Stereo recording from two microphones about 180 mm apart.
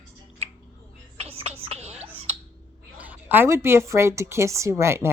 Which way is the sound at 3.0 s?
10° right (ahead or behind).